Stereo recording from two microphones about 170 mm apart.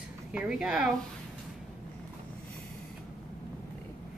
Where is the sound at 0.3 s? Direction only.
5° right (ahead or behind).